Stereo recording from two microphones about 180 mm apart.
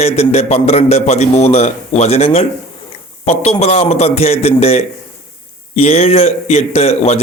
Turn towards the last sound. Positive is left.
turn(degrees=35)  # may be behind; listen again after turning